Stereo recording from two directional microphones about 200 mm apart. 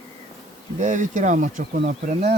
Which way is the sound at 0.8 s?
35° right (ahead or behind).